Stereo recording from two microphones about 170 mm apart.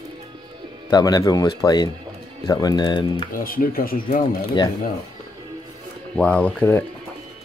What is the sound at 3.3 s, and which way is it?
Speech, 55° left (ahead or behind).